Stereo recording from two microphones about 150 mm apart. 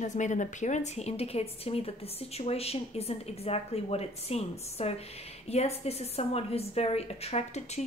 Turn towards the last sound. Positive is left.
turn(degrees=45)  # may be behind; listen again after turning